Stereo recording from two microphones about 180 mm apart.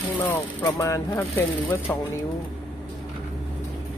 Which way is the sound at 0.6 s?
20° left (ahead or behind).